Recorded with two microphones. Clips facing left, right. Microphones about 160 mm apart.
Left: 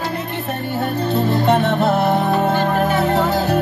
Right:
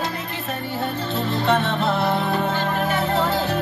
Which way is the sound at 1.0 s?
45° left (ahead or behind).